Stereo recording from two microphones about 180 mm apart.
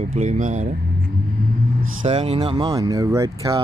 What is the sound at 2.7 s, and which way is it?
Speech, 20° right (ahead or behind).